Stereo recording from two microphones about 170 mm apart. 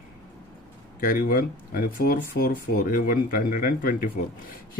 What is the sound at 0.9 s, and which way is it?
A man's voice, 55° left (ahead or behind).